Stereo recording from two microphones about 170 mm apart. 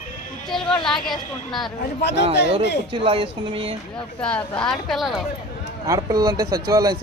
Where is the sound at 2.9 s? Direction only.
35° right (ahead or behind).